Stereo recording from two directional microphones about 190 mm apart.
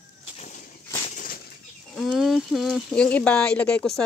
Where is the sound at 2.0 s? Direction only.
Centre (ahead or behind).